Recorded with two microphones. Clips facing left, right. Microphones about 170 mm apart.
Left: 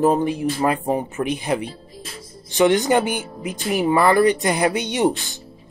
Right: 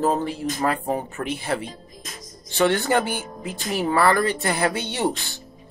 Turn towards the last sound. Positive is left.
turn(degrees=20)  # may be behind; listen again after turning